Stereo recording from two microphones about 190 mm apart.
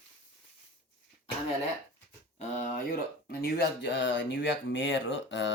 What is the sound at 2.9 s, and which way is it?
Speech, 55° left (ahead or behind).